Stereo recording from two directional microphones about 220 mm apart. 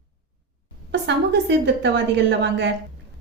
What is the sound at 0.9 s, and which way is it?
A woman's voice, 50° right (ahead or behind).